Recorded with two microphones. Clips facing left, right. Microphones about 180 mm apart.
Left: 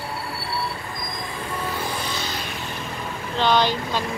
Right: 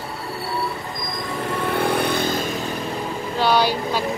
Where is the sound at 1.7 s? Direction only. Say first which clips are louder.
Right 11 dB; 65° right (ahead or behind).